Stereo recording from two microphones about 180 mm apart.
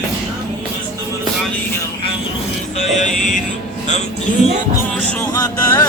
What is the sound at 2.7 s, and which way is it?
Speech, 40° left (ahead or behind).